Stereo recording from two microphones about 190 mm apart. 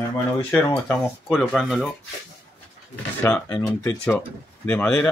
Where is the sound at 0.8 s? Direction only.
5° left (ahead or behind).